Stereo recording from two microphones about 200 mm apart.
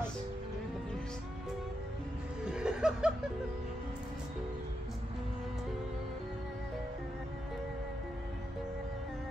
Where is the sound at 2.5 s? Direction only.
5° right (ahead or behind).